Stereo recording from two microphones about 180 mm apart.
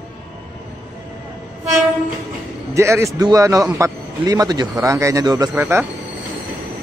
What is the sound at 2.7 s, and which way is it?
A man's voice, 15° right (ahead or behind).